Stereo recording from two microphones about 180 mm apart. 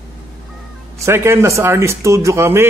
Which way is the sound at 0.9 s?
15° right (ahead or behind).